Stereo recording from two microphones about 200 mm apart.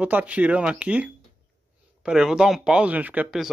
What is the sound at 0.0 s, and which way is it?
Speech, 5° right (ahead or behind).